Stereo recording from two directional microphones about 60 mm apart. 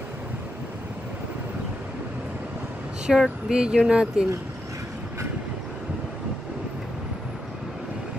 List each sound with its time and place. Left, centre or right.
3.1 s speech: centre